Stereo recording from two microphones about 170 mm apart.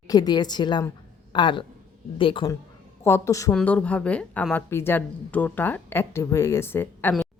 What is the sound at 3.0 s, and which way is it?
Speech, 15° left (ahead or behind).